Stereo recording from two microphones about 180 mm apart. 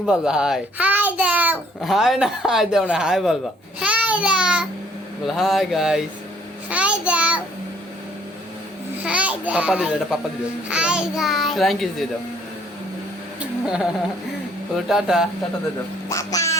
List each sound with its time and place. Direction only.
0.0 s a child's voice: 5° right (ahead or behind)
3.8 s a sound: 5° right (ahead or behind)
5.2 s a child's voice: centre (ahead or behind)
6.7 s child singing: 5° right (ahead or behind)
9.0 s a child's voice: 5° right (ahead or behind)
13.4 s a sound: 5° right (ahead or behind)
14.8 s a child's voice: centre (ahead or behind)
16.0 s quack: 15° left (ahead or behind)